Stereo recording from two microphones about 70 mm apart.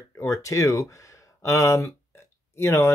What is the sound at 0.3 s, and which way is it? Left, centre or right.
Speech, left.